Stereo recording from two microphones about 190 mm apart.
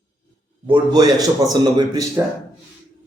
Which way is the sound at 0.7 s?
20° right (ahead or behind).